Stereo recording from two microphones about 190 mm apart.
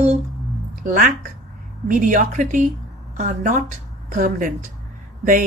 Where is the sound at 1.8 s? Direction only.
40° right (ahead or behind).